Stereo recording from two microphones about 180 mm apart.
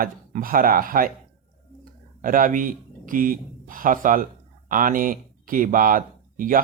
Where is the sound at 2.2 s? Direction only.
50° right (ahead or behind).